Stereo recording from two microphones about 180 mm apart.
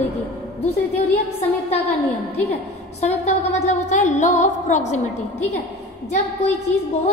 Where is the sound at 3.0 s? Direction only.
40° left (ahead or behind).